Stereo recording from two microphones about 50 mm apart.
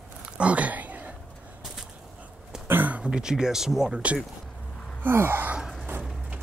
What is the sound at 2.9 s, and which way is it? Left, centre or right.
Speech, centre.